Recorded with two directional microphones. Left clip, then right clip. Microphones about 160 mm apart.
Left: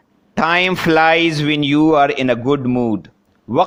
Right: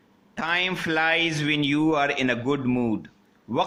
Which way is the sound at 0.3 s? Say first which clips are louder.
Left 10 dB; 55° left (ahead or behind).